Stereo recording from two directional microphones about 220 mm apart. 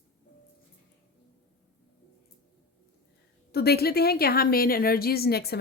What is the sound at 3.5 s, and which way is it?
A woman's voice, 45° left (ahead or behind).